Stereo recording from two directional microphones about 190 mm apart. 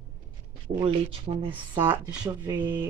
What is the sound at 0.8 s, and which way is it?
Speech, 25° right (ahead or behind).